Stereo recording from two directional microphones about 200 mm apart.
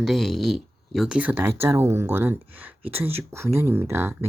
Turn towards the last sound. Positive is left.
turn(degrees=-10)  # may be behind; listen again after turning